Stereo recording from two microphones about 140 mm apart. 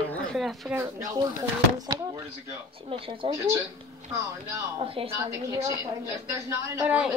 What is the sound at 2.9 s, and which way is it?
Speech, 40° right (ahead or behind).